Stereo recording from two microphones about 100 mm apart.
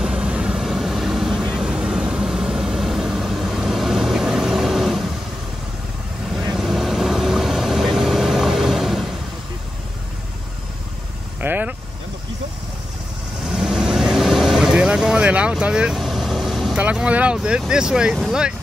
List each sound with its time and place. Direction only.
0.0 s vehicle: 10° right (ahead or behind)
6.5 s vehicle: 5° right (ahead or behind)
11.4 s vehicle: 15° right (ahead or behind)
13.6 s vehicle: 5° right (ahead or behind)
16.7 s vehicle: 10° right (ahead or behind)